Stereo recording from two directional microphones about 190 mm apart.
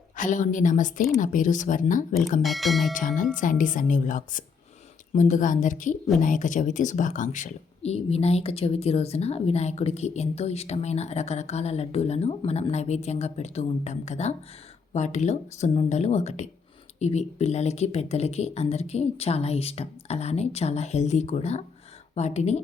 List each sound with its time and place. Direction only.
0.2 s a woman's voice: 40° left (ahead or behind)
2.4 s speech: centre (ahead or behind)
2.9 s a woman's voice: 45° left (ahead or behind)